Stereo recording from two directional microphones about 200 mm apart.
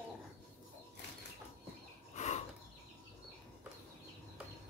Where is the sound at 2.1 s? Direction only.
35° left (ahead or behind).